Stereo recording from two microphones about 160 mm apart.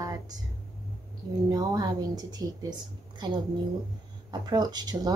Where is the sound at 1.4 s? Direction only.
25° right (ahead or behind).